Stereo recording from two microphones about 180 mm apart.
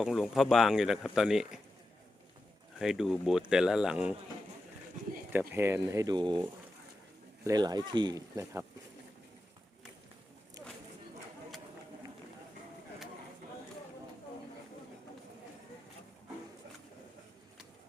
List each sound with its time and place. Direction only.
0.0 s speech: centre (ahead or behind)
2.7 s speech: 5° right (ahead or behind)
5.3 s speech: 10° right (ahead or behind)
7.4 s speech: 20° right (ahead or behind)